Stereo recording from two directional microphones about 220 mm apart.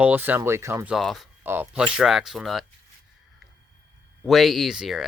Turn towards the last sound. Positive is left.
turn(degrees=0)  # may be behind; listen again after turning